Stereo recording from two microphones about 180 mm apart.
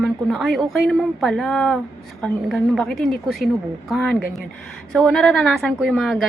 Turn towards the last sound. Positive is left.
turn(degrees=0)  # may be behind; listen again after turning